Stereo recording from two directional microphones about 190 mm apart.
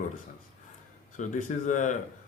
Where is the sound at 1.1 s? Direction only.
40° left (ahead or behind).